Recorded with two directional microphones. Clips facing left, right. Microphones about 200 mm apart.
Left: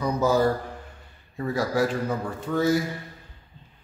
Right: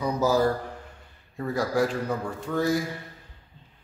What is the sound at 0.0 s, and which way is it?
Speech, centre (ahead or behind).